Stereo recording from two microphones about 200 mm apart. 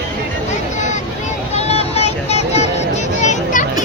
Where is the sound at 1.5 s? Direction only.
30° left (ahead or behind).